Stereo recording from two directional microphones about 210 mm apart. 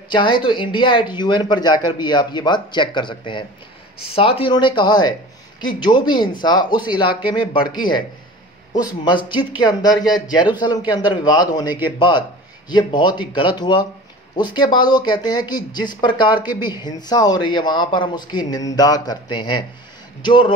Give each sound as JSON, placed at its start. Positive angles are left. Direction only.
{"t": 0.1, "sound": "speech", "side_deg": 20}